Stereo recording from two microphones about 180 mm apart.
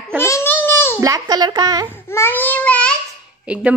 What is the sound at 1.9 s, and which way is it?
A child's voice, 10° left (ahead or behind).